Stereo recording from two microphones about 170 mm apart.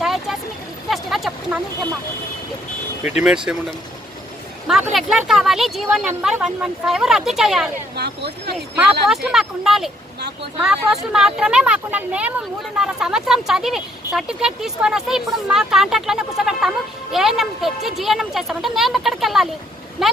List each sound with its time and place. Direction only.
0.0 s vehicle: centre (ahead or behind)
0.9 s a sound: centre (ahead or behind)
3.2 s speech: 5° right (ahead or behind)
4.9 s speech: centre (ahead or behind)
7.9 s speech: 75° right (ahead or behind)
8.7 s speech: 5° right (ahead or behind)